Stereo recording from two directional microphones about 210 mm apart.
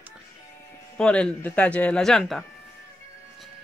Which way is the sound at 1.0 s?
5° left (ahead or behind).